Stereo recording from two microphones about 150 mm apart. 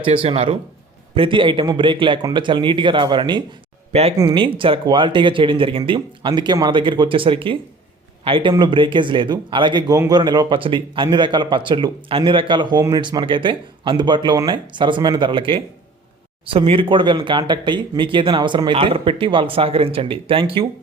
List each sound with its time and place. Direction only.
0.0 s speech: 35° right (ahead or behind)